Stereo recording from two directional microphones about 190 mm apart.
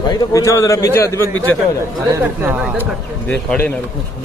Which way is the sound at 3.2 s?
5° left (ahead or behind).